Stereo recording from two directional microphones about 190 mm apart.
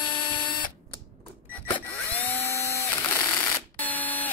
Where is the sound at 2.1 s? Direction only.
10° left (ahead or behind).